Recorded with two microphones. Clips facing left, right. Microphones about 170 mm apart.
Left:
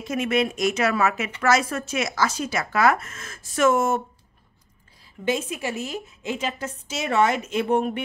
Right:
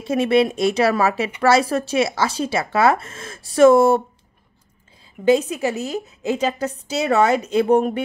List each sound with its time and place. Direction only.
0.0 s a woman's voice: 30° right (ahead or behind)
5.2 s a woman's voice: 35° right (ahead or behind)